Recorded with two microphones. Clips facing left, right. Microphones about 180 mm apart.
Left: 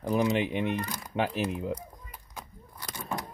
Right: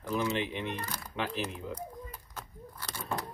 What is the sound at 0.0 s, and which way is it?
Speech, 40° left (ahead or behind).